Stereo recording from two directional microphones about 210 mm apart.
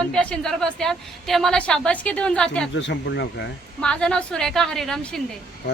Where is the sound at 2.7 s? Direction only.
60° left (ahead or behind).